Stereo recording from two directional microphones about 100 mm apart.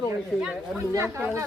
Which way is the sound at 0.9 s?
30° right (ahead or behind).